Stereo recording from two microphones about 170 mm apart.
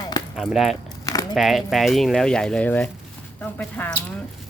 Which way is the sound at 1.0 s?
20° left (ahead or behind).